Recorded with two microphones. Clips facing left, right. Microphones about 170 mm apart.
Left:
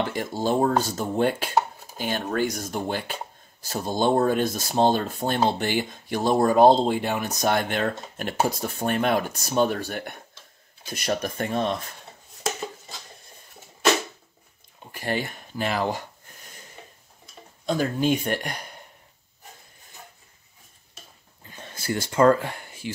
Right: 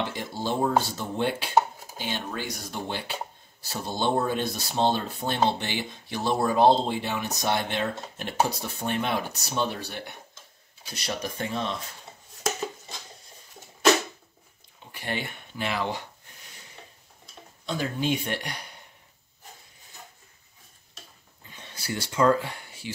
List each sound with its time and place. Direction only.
0.1 s speech: 45° left (ahead or behind)
14.9 s speech: 40° left (ahead or behind)
17.6 s speech: 45° left (ahead or behind)
21.5 s a sound: 45° left (ahead or behind)